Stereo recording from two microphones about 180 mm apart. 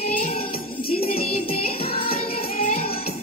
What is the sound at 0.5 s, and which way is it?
Music, 55° left (ahead or behind).